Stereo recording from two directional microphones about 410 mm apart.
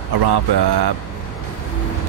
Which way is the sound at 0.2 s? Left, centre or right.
Right.